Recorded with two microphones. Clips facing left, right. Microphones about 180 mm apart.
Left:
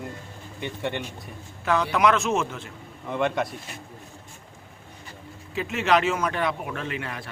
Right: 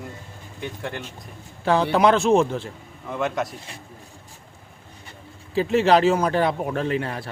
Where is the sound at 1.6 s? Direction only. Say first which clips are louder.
Right 4 dB; 30° right (ahead or behind).